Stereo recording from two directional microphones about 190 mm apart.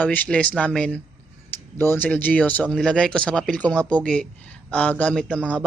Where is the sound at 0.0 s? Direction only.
10° left (ahead or behind).